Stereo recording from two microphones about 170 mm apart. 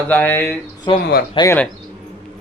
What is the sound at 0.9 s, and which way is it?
Speech, 30° left (ahead or behind).